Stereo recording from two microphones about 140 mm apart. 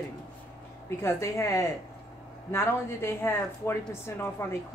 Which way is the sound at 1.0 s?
20° left (ahead or behind).